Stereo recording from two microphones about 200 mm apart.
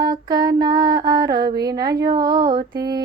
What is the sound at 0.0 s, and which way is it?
Mantra, 20° right (ahead or behind).